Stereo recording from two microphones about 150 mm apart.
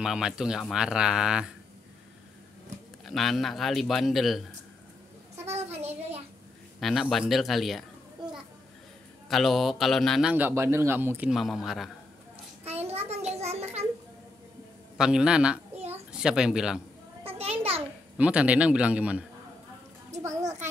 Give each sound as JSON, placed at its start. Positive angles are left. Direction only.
{"t": 0.0, "sound": "speech", "side_deg": -5}
{"t": 3.1, "sound": "speech", "side_deg": 0}
{"t": 5.5, "sound": "a sound", "side_deg": -45}
{"t": 6.8, "sound": "speech", "side_deg": 0}
{"t": 9.3, "sound": "speech", "side_deg": 0}
{"t": 10.3, "sound": "a man's voice", "side_deg": -15}
{"t": 12.8, "sound": "a sound", "side_deg": -45}
{"t": 15.0, "sound": "a child's voice", "side_deg": -5}
{"t": 17.2, "sound": "a sound", "side_deg": -40}
{"t": 18.1, "sound": "a man's voice", "side_deg": -10}